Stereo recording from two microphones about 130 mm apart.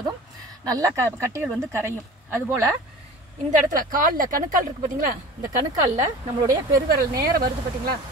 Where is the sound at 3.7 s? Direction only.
90° right.